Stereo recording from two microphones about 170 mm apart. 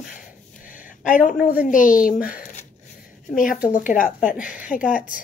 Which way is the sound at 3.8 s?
50° left (ahead or behind).